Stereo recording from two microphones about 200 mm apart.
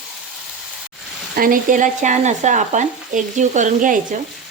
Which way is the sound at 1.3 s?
45° right (ahead or behind).